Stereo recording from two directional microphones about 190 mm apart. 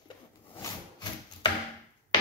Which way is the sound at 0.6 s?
20° left (ahead or behind).